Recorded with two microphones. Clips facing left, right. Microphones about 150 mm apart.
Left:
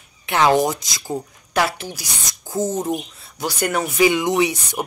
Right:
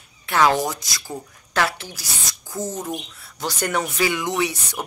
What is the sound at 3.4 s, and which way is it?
Speech, 10° left (ahead or behind).